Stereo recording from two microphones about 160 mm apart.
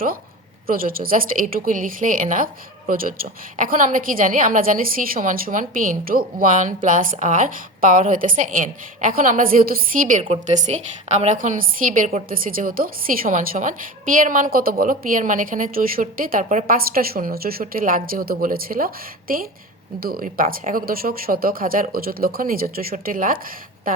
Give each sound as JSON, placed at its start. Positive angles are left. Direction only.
{"t": 0.7, "sound": "a woman's voice", "side_deg": -60}